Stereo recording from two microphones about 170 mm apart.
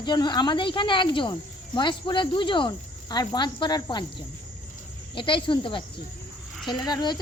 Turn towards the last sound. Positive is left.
turn(degrees=25)  # may be behind; listen again after turning